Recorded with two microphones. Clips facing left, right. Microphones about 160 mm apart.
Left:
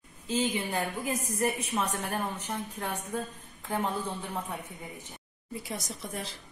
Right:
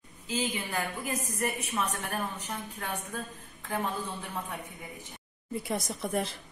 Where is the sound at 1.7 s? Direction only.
15° left (ahead or behind).